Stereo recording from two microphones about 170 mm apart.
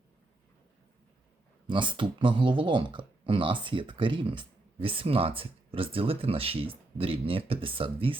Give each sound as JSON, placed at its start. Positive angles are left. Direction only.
{"t": 1.6, "sound": "speech", "side_deg": -30}